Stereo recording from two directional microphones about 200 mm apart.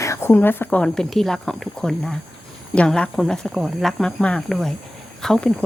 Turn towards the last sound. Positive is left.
turn(degrees=5)  # may be behind; listen again after turning